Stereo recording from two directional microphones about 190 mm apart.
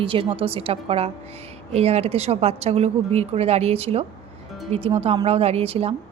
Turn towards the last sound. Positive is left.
turn(degrees=-30)  # may be behind; listen again after turning